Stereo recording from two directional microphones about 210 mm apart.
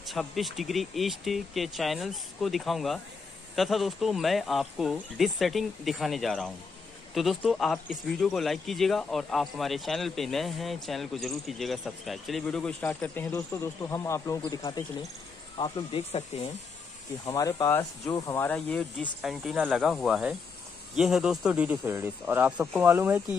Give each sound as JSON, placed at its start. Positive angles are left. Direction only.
{"t": 0.0, "sound": "speech", "side_deg": 0}
{"t": 17.3, "sound": "speech", "side_deg": 15}